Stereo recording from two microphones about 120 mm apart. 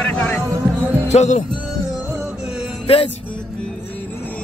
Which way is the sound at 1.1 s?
75° left (ahead or behind).